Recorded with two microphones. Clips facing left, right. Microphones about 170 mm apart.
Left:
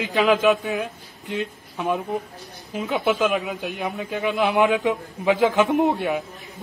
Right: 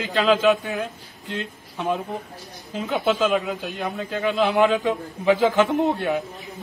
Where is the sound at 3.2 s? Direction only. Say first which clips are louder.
Right 1 dB; 15° left (ahead or behind).